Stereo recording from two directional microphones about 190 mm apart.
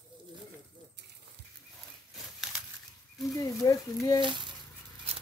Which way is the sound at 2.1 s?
Centre (ahead or behind).